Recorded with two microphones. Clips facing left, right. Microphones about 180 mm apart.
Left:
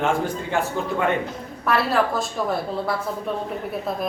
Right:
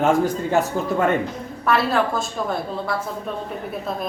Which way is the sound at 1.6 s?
Centre (ahead or behind).